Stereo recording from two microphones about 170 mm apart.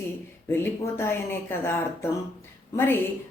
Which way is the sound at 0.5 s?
15° left (ahead or behind).